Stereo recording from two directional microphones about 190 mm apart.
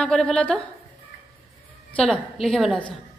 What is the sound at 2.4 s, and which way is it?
Speech, centre (ahead or behind).